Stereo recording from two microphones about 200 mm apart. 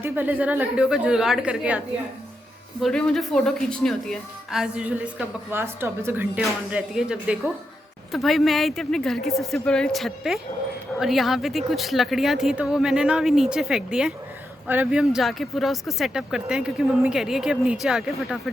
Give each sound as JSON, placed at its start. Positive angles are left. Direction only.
{"t": 0.0, "sound": "speech", "side_deg": -10}
{"t": 2.8, "sound": "speech", "side_deg": 0}